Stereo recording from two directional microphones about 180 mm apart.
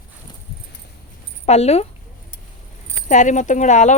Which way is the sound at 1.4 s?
35° left (ahead or behind).